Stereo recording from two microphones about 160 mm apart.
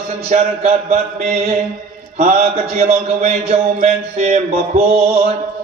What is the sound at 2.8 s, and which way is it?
Speech, 45° right (ahead or behind).